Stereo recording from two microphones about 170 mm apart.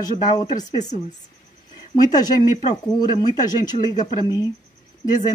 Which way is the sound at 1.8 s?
25° left (ahead or behind).